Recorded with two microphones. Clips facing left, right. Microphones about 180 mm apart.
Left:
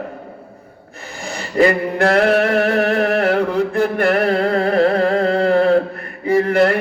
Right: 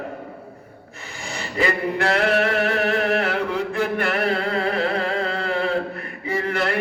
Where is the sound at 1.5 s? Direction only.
45° left (ahead or behind).